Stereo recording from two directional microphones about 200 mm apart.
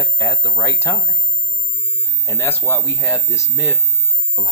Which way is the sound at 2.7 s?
15° left (ahead or behind).